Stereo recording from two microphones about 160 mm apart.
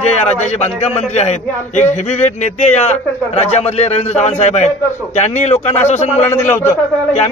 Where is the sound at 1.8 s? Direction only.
45° left (ahead or behind).